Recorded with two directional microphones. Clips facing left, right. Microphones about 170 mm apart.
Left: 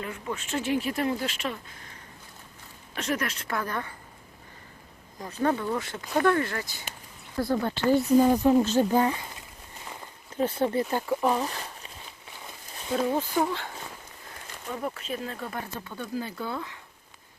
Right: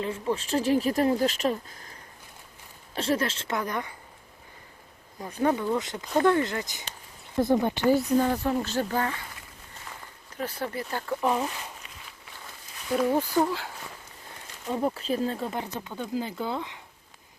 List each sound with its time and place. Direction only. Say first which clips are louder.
0.0 s speech: right 5 dB; 30° right (ahead or behind)
5.2 s speech: right 1 dB; 15° right (ahead or behind)
7.9 s speech: left 4 dB; 5° left (ahead or behind)
9.9 s a sound: left 4 dB; 25° left (ahead or behind)
11.0 s speech: left 2 dB; 10° left (ahead or behind)
12.5 s a sound: right 1 dB; 20° left (ahead or behind)
13.1 s speech: right 4 dB; 10° right (ahead or behind)
14.7 s speech: right 5 dB; 30° right (ahead or behind)